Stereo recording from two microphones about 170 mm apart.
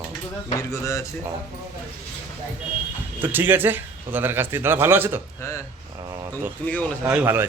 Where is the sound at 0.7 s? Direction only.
20° left (ahead or behind).